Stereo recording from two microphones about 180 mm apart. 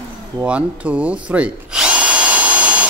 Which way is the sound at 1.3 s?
5° right (ahead or behind).